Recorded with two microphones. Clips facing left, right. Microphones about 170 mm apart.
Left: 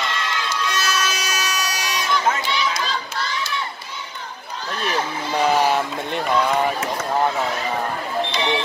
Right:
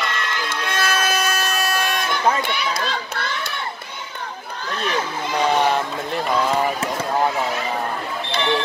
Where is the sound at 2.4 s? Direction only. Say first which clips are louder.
Even; 55° right (ahead or behind).